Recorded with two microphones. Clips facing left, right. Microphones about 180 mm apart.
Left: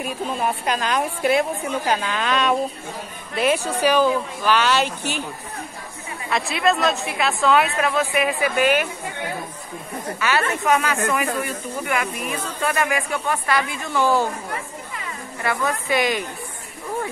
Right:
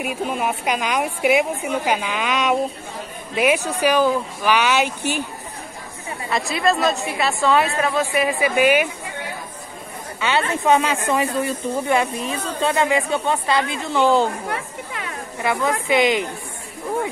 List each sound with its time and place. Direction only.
0.0 s a woman's voice: 10° right (ahead or behind)
6.3 s a woman's voice: centre (ahead or behind)
10.2 s a woman's voice: 25° right (ahead or behind)
14.5 s chatter: 70° right (ahead or behind)
15.4 s a woman's voice: 20° right (ahead or behind)